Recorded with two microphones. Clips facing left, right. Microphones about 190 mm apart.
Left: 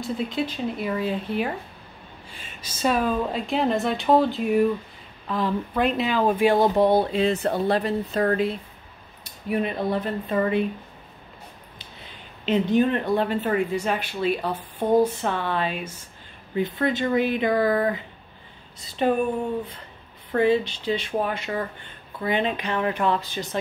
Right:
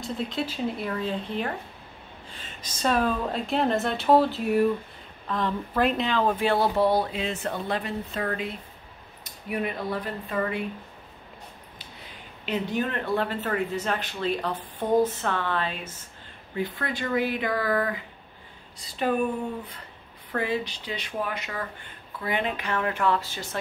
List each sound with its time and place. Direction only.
0.0 s speech: centre (ahead or behind); by 10.6 s 25° left (ahead or behind)
12.4 s speech: 20° left (ahead or behind)
19.0 s speech: 25° left (ahead or behind)
20.2 s speech: 25° left (ahead or behind)